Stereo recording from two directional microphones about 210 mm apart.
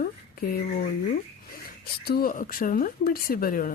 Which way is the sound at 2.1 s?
45° left (ahead or behind).